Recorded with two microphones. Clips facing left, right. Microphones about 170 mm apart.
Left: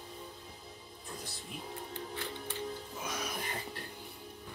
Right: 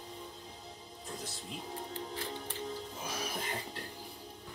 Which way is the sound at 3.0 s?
30° right (ahead or behind).